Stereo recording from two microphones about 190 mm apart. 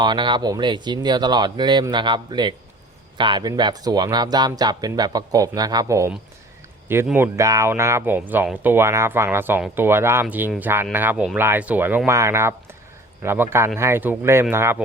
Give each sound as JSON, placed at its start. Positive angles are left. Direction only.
{"t": 0.0, "sound": "speech", "side_deg": -25}